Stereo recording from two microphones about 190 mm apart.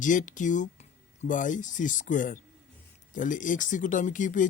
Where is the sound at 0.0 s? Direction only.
45° left (ahead or behind).